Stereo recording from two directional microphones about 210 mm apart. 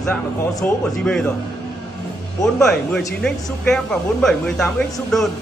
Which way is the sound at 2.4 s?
Centre (ahead or behind).